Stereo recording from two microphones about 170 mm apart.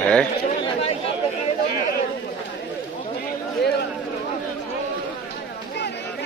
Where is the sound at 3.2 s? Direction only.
70° left (ahead or behind).